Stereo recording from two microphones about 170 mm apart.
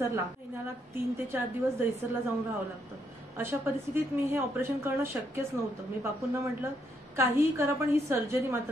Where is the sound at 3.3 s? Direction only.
15° right (ahead or behind).